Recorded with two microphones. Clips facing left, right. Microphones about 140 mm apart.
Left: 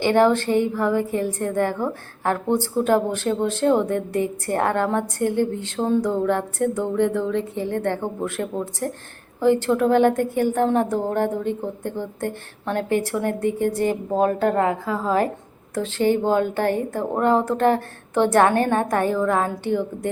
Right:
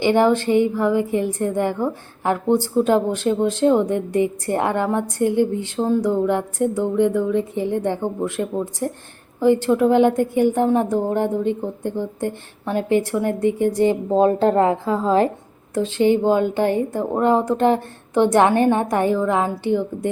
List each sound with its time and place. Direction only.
0.0 s a woman's voice: 15° right (ahead or behind)